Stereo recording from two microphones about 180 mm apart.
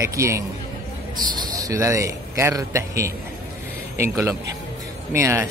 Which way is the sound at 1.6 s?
15° right (ahead or behind).